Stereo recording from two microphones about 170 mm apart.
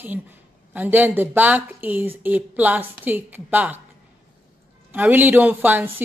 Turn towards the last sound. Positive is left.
turn(degrees=-10)  # may be behind; listen again after turning